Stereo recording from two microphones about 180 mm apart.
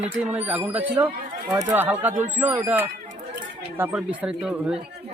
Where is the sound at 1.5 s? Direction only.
20° right (ahead or behind).